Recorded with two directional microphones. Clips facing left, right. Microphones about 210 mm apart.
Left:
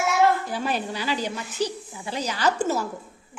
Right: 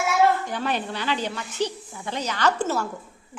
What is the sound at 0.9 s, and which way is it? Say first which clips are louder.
A woman's voice: even; 10° left (ahead or behind).